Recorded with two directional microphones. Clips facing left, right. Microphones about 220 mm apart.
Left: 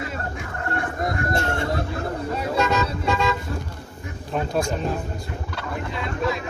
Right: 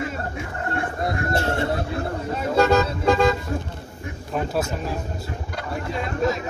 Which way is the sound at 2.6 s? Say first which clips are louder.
Right 7 dB; 35° right (ahead or behind).